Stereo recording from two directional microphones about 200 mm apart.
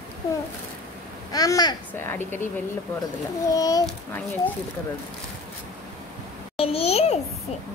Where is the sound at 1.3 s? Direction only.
20° left (ahead or behind).